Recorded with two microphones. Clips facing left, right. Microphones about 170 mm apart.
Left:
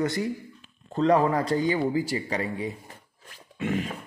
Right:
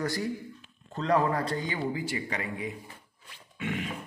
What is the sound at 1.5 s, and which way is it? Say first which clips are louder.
Speech: left 7 dB; 35° left (ahead or behind).